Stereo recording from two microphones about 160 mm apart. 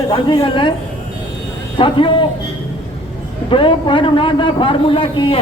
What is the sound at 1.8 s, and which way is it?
Speech, 35° left (ahead or behind).